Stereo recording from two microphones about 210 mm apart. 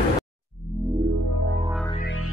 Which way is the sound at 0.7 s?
45° left (ahead or behind).